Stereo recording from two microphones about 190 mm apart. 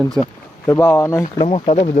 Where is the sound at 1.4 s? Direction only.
35° left (ahead or behind).